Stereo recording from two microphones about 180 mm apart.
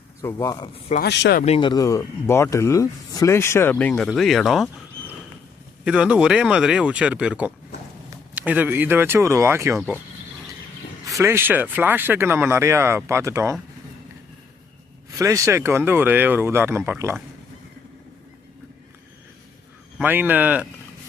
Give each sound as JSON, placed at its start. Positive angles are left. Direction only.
{"t": 0.2, "sound": "a man's voice", "side_deg": 15}
{"t": 1.0, "sound": "speech", "side_deg": 65}
{"t": 1.4, "sound": "speech", "side_deg": 35}
{"t": 1.7, "sound": "speech", "side_deg": 20}
{"t": 11.0, "sound": "speech", "side_deg": -15}
{"t": 15.1, "sound": "speech", "side_deg": -15}
{"t": 20.0, "sound": "speech", "side_deg": -10}